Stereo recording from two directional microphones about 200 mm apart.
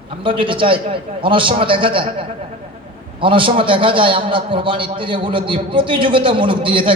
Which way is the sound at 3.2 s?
25° right (ahead or behind).